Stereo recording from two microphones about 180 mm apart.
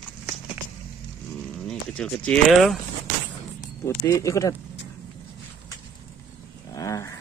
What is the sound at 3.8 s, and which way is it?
Speech, 15° left (ahead or behind).